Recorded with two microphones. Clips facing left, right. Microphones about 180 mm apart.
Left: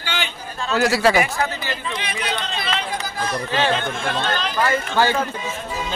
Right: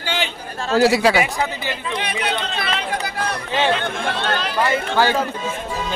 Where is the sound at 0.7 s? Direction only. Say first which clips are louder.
Right 2 dB; 25° right (ahead or behind).